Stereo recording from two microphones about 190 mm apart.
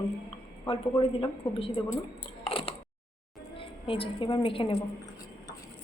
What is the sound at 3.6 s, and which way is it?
A woman's voice, 30° left (ahead or behind).